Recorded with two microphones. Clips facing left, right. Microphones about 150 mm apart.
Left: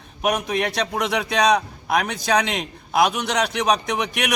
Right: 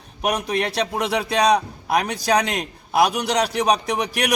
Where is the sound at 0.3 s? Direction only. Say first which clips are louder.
Even; 35° right (ahead or behind).